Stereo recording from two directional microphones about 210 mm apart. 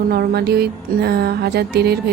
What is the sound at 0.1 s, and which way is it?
A woman's voice, 50° right (ahead or behind).